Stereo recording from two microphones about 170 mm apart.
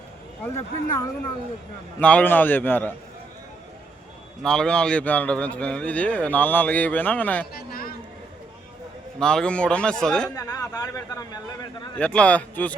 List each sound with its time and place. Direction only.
0.5 s speech: 20° left (ahead or behind)
2.0 s a man's voice: 10° left (ahead or behind)
4.4 s a man's voice: 5° left (ahead or behind)
7.5 s a sound: 60° left (ahead or behind)
9.1 s a man's voice: 5° left (ahead or behind)
10.3 s speech: 20° left (ahead or behind)
11.9 s a man's voice: 10° left (ahead or behind)